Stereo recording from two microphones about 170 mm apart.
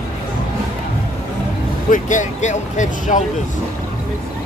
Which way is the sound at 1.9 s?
45° left (ahead or behind).